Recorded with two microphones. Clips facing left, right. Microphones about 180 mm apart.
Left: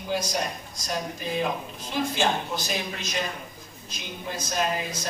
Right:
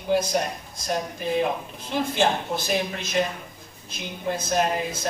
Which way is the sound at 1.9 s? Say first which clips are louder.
Right 3 dB; 60° right (ahead or behind).